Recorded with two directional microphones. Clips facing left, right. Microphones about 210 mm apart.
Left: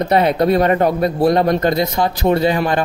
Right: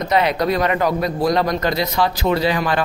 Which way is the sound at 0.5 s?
30° left (ahead or behind).